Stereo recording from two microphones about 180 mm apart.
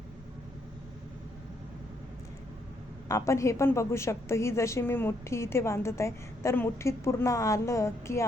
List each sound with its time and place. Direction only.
3.1 s a woman's voice: 15° left (ahead or behind)